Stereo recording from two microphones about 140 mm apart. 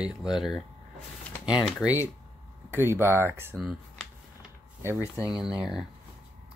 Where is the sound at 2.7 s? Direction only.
15° right (ahead or behind).